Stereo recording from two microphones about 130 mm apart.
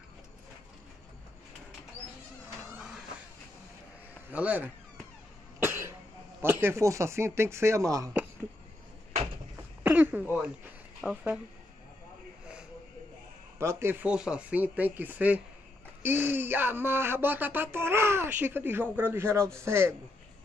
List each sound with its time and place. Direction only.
4.3 s speech: 10° right (ahead or behind)
5.6 s cough: 20° right (ahead or behind)
6.4 s speech: 20° right (ahead or behind)
9.8 s throat clearing: 15° right (ahead or behind)
11.0 s speech: 5° right (ahead or behind)
13.6 s speech: 20° right (ahead or behind)